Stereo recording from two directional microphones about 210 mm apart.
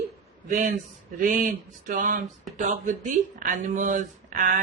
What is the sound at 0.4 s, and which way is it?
Speech, 35° right (ahead or behind).